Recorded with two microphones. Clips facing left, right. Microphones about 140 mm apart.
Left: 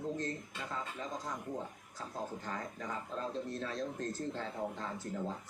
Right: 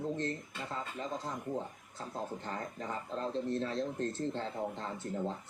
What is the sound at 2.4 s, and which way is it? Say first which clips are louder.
Speech: right 2 dB; 30° right (ahead or behind).